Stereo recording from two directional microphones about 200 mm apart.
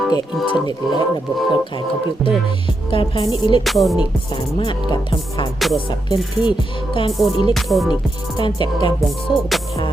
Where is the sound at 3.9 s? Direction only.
25° left (ahead or behind).